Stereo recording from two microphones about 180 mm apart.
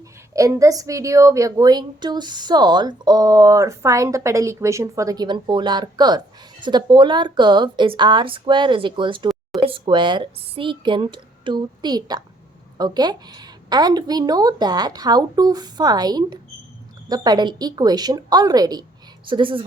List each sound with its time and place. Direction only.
0.3 s a woman's voice: 15° right (ahead or behind)